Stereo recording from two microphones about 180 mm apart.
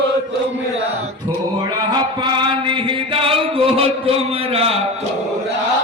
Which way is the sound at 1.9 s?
25° right (ahead or behind).